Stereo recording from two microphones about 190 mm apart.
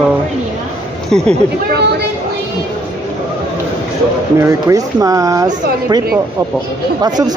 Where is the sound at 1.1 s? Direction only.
5° left (ahead or behind).